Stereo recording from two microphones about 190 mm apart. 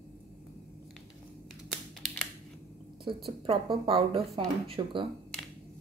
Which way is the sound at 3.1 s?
25° right (ahead or behind).